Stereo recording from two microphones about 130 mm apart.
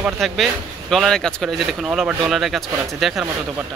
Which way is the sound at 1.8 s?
5° right (ahead or behind).